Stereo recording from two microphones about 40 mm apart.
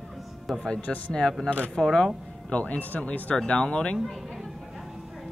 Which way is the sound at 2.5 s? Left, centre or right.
Left.